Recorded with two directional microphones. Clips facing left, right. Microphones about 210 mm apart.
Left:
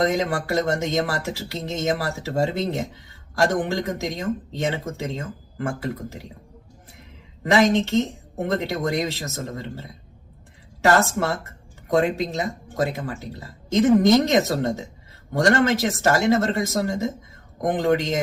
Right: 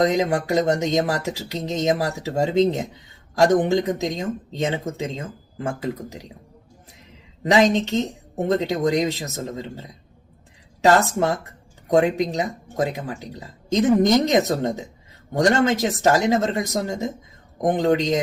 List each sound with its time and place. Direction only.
0.0 s speech: 20° right (ahead or behind)
7.4 s speech: 20° right (ahead or behind)
10.8 s speech: 15° right (ahead or behind)